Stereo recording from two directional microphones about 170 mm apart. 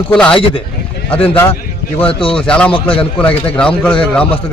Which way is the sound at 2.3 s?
5° left (ahead or behind).